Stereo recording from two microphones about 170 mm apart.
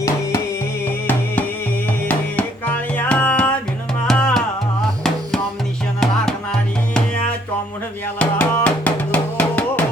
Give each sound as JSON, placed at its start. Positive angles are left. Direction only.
{"t": 0.0, "sound": "music", "side_deg": 20}
{"t": 6.0, "sound": "music", "side_deg": 5}
{"t": 8.2, "sound": "music", "side_deg": 10}